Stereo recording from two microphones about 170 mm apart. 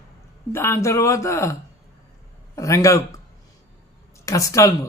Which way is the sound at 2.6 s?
20° left (ahead or behind).